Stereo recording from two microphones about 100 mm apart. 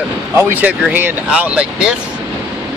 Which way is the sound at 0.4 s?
15° right (ahead or behind).